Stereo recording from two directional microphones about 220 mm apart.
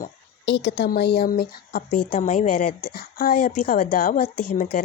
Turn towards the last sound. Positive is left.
turn(degrees=35)  # may be behind; listen again after turning